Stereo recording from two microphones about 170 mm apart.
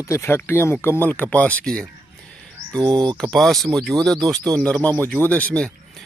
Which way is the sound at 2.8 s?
25° right (ahead or behind).